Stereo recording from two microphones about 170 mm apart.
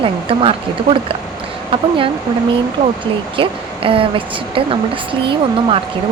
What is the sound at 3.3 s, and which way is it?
A woman's voice, 30° right (ahead or behind).